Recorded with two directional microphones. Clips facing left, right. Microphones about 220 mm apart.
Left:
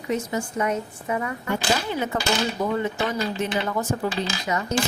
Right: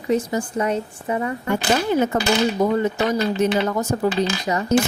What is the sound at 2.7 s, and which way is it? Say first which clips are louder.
Speech: right 5 dB; 40° right (ahead or behind).